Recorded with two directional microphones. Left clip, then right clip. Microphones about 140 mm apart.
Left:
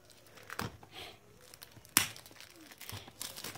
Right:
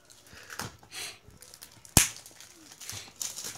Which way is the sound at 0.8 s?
20° left (ahead or behind).